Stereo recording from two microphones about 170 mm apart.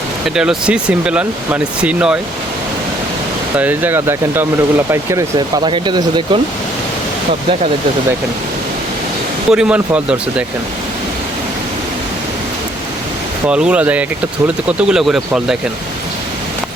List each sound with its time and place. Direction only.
0.3 s speech: 5° right (ahead or behind)
3.6 s speech: 10° right (ahead or behind)
5.6 s speech: 25° right (ahead or behind)
9.5 s speech: 5° right (ahead or behind)
13.5 s speech: 5° right (ahead or behind)